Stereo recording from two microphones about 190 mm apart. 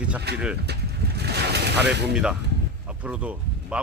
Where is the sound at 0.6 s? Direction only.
60° right (ahead or behind).